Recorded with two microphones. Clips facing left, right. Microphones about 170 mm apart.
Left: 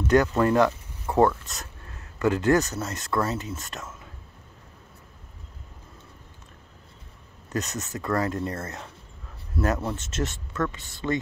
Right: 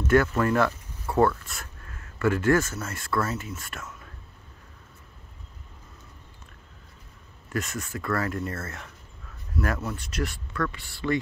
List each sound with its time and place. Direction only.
0.0 s speech: 20° left (ahead or behind)
7.4 s speech: 20° left (ahead or behind)